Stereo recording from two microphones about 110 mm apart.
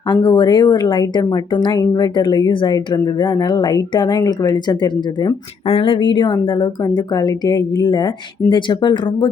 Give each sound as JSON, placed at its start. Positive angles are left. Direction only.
{"t": 0.1, "sound": "a woman's voice", "side_deg": 45}
{"t": 5.6, "sound": "a woman's voice", "side_deg": 60}